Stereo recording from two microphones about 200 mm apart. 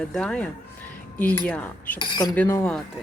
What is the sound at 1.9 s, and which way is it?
Speech, 20° left (ahead or behind).